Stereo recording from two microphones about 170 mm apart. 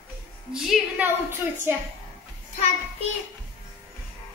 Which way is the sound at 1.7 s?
10° right (ahead or behind).